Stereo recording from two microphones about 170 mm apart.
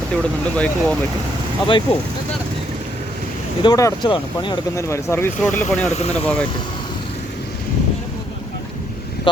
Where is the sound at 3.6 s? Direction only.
20° left (ahead or behind).